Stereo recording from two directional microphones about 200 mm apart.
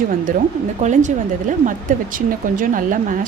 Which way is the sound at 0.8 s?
35° right (ahead or behind).